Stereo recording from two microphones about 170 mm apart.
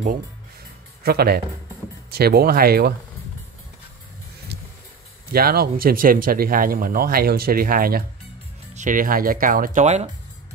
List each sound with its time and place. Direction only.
1.0 s speech: 70° right (ahead or behind)
4.5 s music: 70° right (ahead or behind)
5.3 s speech: 65° right (ahead or behind); by 10.0 s 45° right (ahead or behind)